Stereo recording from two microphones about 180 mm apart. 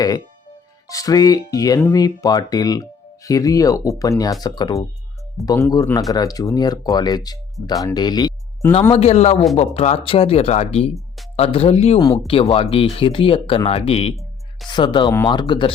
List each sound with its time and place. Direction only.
0.9 s speech: 20° left (ahead or behind)
8.9 s speech: 35° left (ahead or behind)
11.9 s speech: 20° left (ahead or behind)